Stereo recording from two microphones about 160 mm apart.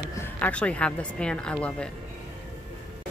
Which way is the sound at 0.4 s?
5° left (ahead or behind).